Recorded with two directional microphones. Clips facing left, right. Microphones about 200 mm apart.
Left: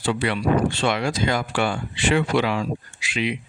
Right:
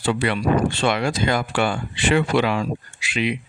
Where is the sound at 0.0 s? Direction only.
60° right (ahead or behind).